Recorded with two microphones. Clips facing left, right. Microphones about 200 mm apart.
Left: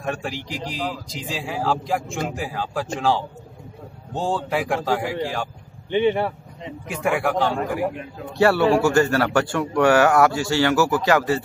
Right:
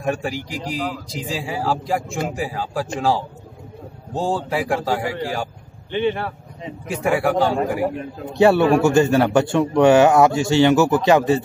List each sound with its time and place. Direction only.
0.0 s a man's voice: 5° right (ahead or behind)
5.9 s a man's voice: 15° left (ahead or behind)
6.9 s a man's voice: centre (ahead or behind)
8.3 s a man's voice: 20° right (ahead or behind)